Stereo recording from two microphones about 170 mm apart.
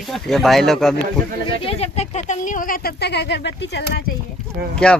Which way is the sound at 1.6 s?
35° left (ahead or behind).